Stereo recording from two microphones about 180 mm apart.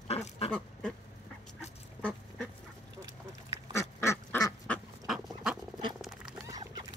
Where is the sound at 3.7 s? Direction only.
15° left (ahead or behind).